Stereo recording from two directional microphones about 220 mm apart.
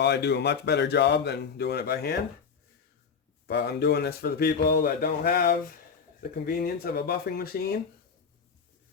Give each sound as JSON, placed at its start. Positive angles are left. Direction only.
{"t": 0.0, "sound": "speech", "side_deg": 50}
{"t": 3.4, "sound": "speech", "side_deg": 50}